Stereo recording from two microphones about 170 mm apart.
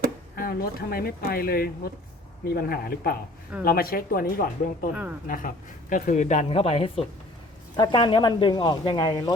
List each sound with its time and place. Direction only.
0.3 s speech: 60° left (ahead or behind); by 9.3 s 25° left (ahead or behind)